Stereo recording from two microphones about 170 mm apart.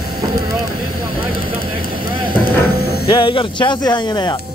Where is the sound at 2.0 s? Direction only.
60° left (ahead or behind).